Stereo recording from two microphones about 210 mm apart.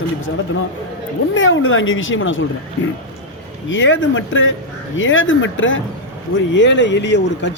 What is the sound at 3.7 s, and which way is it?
Speech, 65° left (ahead or behind).